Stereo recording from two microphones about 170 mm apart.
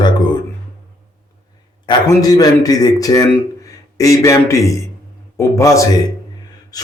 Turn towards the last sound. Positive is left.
turn(degrees=20)  # may be behind; listen again after turning